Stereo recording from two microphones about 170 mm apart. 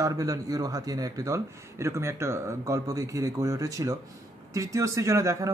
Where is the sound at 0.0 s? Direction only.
20° right (ahead or behind).